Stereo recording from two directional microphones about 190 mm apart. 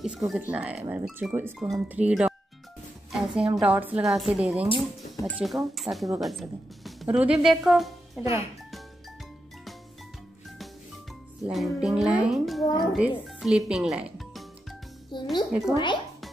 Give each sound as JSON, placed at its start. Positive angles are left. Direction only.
{"t": 0.0, "sound": "a woman's voice", "side_deg": -5}
{"t": 4.6, "sound": "speech", "side_deg": 25}
{"t": 5.2, "sound": "a woman's voice", "side_deg": 0}
{"t": 11.4, "sound": "a woman's voice", "side_deg": 0}
{"t": 15.1, "sound": "a child's voice", "side_deg": 25}